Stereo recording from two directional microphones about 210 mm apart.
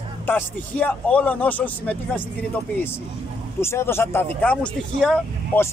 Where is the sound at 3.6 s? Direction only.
10° left (ahead or behind).